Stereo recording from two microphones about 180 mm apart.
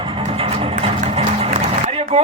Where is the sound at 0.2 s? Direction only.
30° right (ahead or behind).